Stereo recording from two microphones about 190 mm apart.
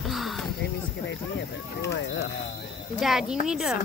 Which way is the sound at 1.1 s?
70° left (ahead or behind).